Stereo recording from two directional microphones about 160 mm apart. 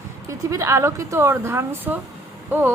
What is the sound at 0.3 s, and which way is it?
A woman's voice, 20° right (ahead or behind).